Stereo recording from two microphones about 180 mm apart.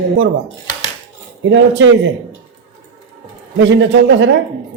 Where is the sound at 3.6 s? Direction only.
85° right.